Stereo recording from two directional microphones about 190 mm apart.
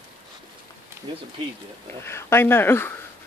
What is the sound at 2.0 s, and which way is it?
Speech, 10° left (ahead or behind).